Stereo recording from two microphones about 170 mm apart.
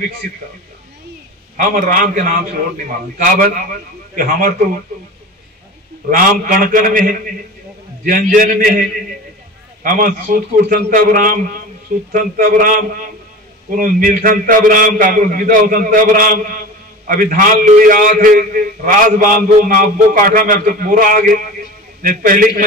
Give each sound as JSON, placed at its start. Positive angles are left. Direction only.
{"t": 1.6, "sound": "a man's voice", "side_deg": -55}
{"t": 3.3, "sound": "a man's voice", "side_deg": -60}
{"t": 6.0, "sound": "a man's voice", "side_deg": -55}
{"t": 9.8, "sound": "a man's voice", "side_deg": -55}